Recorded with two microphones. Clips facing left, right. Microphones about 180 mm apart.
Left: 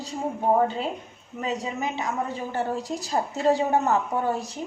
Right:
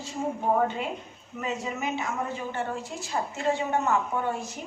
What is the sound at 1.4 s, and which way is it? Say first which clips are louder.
A woman's voice: left 3 dB; 35° left (ahead or behind).